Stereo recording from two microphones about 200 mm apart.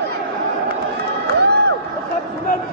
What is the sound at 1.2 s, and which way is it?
Crowd, 55° right (ahead or behind).